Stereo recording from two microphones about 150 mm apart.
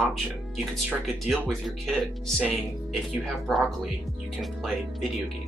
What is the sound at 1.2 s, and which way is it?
Speech, centre (ahead or behind).